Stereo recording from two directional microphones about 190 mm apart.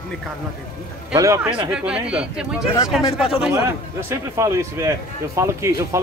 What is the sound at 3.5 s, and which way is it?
A man's voice, 15° right (ahead or behind).